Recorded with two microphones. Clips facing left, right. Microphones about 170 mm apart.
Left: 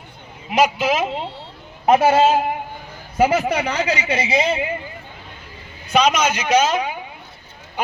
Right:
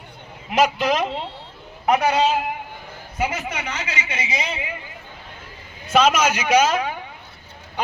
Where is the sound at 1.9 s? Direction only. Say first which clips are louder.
Left 4 dB; 30° left (ahead or behind).